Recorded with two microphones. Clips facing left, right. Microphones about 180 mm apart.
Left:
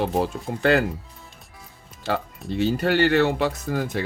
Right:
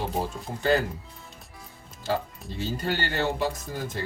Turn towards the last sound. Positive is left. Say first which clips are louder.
# left 7 dB
turn(degrees=70)  # may be behind; listen again after turning